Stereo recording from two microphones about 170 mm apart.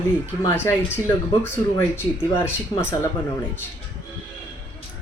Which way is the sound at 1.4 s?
15° left (ahead or behind).